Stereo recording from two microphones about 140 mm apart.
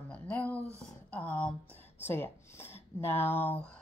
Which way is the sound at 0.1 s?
10° left (ahead or behind).